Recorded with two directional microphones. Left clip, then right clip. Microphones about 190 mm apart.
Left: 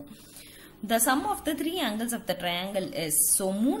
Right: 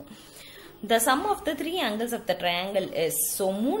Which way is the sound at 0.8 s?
15° left (ahead or behind).